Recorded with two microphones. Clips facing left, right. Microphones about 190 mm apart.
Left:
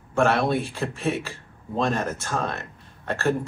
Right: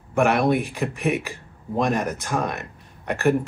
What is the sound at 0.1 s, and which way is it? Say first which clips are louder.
Speech: right 2 dB; 15° right (ahead or behind).